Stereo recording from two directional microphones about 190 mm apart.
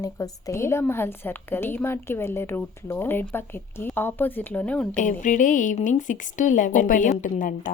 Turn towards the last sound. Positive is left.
turn(degrees=45)  # may be behind; listen again after turning